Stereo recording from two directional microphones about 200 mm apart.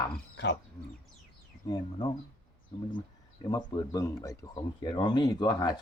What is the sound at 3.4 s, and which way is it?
Speech, 20° left (ahead or behind).